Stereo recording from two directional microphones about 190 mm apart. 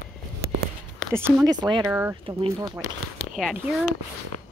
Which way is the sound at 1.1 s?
10° right (ahead or behind).